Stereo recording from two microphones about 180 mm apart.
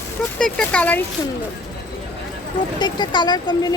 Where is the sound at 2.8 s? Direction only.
25° left (ahead or behind).